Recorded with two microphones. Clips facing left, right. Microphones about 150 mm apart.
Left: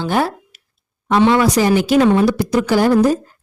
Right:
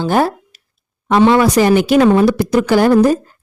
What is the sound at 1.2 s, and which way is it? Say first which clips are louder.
Speech: right 3 dB; 60° right (ahead or behind).